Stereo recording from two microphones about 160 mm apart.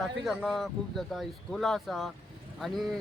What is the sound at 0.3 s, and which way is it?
Speech, centre (ahead or behind).